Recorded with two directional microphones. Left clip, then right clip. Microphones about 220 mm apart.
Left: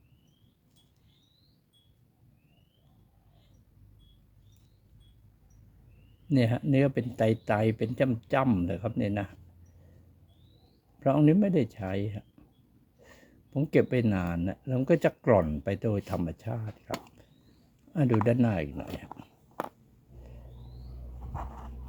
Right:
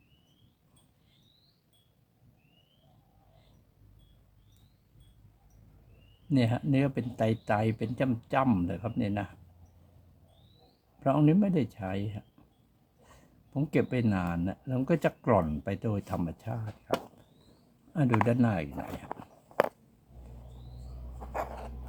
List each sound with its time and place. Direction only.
6.2 s speech: 15° left (ahead or behind)
11.0 s speech: 15° left (ahead or behind)
18.3 s speech: 15° left (ahead or behind)